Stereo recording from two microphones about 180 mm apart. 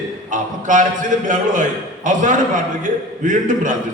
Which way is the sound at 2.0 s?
45° right (ahead or behind).